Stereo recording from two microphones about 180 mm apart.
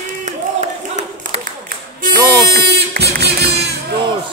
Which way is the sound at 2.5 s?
60° right (ahead or behind).